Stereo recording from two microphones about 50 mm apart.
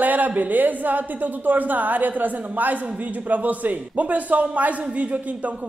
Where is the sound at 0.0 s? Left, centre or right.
Right.